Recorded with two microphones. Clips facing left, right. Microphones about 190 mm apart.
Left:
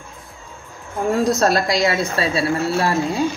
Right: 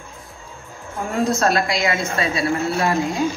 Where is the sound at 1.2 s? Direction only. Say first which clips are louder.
Right 1 dB; 40° left (ahead or behind).